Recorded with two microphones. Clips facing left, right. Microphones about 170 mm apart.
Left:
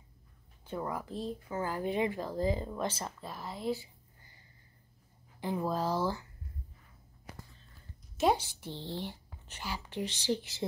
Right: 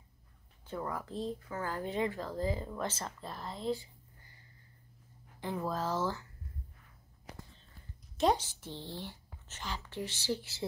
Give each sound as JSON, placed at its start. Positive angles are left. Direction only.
{"t": 0.7, "sound": "speech", "side_deg": 15}
{"t": 5.4, "sound": "speech", "side_deg": 10}
{"t": 8.2, "sound": "a woman's voice", "side_deg": 5}
{"t": 8.8, "sound": "speech", "side_deg": 15}